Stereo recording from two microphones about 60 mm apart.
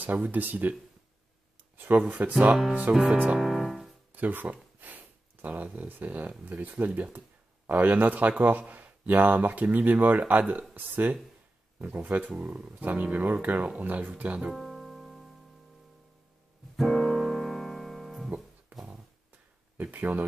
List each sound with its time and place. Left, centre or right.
0.0 s speech: right
1.8 s speech: right
3.3 s piano: centre
4.1 s speech: right
14.5 s music: centre
16.7 s piano: centre
19.8 s speech: right